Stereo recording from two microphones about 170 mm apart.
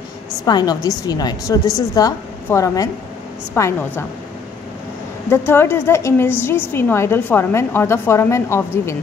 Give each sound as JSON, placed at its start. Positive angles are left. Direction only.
{"t": 0.5, "sound": "a woman's voice", "side_deg": 25}
{"t": 5.3, "sound": "a woman's voice", "side_deg": 15}